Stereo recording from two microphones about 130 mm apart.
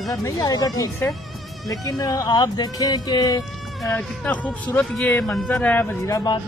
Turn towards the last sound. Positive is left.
turn(degrees=25)  # may be behind; listen again after turning